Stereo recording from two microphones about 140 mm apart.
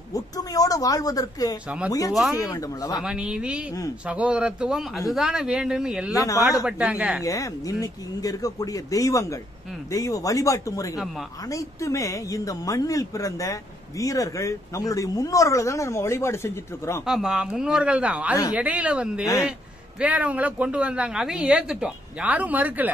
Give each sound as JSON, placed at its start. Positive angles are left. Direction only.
{"t": 0.1, "sound": "a sound", "side_deg": 25}
{"t": 1.9, "sound": "speech", "side_deg": 25}
{"t": 3.0, "sound": "speech", "side_deg": -5}
{"t": 6.1, "sound": "speech", "side_deg": 20}
{"t": 6.6, "sound": "speech", "side_deg": -10}
{"t": 7.2, "sound": "speech", "side_deg": 25}
{"t": 17.0, "sound": "speech", "side_deg": -5}